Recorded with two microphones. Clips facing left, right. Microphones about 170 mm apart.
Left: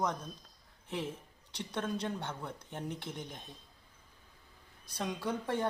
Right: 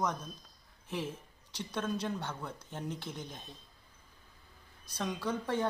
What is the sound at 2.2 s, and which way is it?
Speech, 25° left (ahead or behind).